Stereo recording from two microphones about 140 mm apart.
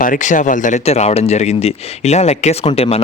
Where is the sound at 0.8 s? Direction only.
50° left (ahead or behind).